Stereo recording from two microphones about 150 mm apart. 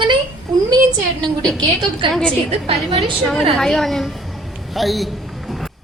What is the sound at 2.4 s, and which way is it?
Speech, 40° right (ahead or behind).